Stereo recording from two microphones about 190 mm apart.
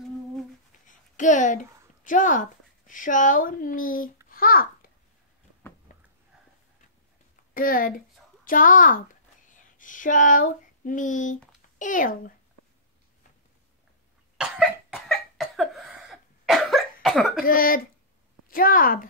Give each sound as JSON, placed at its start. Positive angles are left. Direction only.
{"t": 0.8, "sound": "a sound", "side_deg": 40}
{"t": 2.9, "sound": "speech", "side_deg": 45}
{"t": 4.3, "sound": "babbling", "side_deg": 50}
{"t": 5.9, "sound": "a sound", "side_deg": 45}
{"t": 7.5, "sound": "speech", "side_deg": 45}
{"t": 14.4, "sound": "cough", "side_deg": 0}
{"t": 17.5, "sound": "speech", "side_deg": 50}